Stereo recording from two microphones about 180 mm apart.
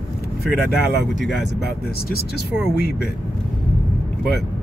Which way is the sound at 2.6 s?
65° left (ahead or behind).